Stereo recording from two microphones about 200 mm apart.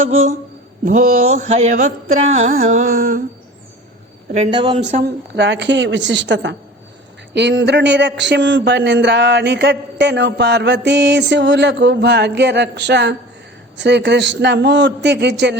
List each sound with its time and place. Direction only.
0.9 s a sound: 35° right (ahead or behind)
2.3 s carnatic music: 35° right (ahead or behind)
4.5 s speech: 25° right (ahead or behind)
4.9 s speech: 45° right (ahead or behind)